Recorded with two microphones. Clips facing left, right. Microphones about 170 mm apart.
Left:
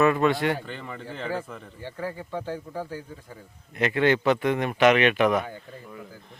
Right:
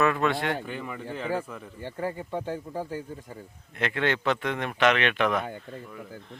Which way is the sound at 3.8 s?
5° left (ahead or behind).